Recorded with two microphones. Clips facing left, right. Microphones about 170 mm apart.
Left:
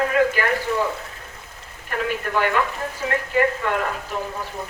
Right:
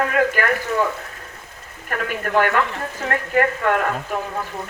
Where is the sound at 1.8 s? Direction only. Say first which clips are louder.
Even; 50° right (ahead or behind).